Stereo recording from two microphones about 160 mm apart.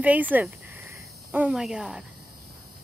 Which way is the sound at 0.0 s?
10° right (ahead or behind).